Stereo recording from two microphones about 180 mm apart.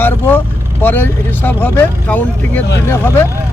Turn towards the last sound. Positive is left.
turn(degrees=15)  # may be behind; listen again after turning